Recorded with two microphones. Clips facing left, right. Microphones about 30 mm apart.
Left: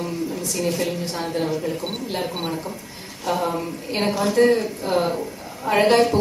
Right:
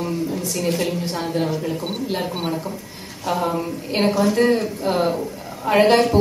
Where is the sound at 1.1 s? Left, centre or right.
Centre.